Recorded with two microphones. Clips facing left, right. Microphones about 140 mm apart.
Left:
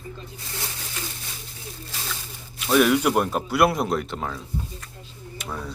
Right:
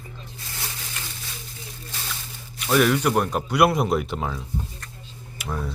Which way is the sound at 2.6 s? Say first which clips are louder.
Left 1 dB; centre (ahead or behind).